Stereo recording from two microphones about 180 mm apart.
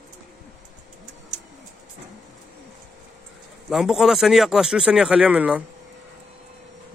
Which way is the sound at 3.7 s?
Centre (ahead or behind).